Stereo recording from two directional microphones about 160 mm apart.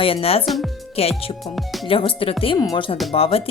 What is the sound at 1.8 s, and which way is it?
Speech, 35° left (ahead or behind).